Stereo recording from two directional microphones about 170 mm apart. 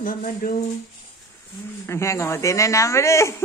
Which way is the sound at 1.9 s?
15° left (ahead or behind).